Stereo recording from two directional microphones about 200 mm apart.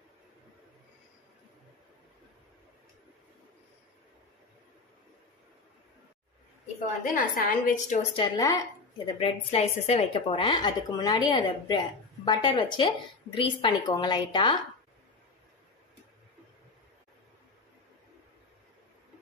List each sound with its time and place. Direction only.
7.2 s a woman's voice: 40° left (ahead or behind)
8.2 s speech: 20° left (ahead or behind)
9.2 s a woman's voice: 30° left (ahead or behind)